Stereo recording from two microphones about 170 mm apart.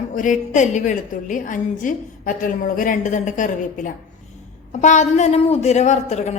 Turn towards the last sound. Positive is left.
turn(degrees=40)  # may be behind; listen again after turning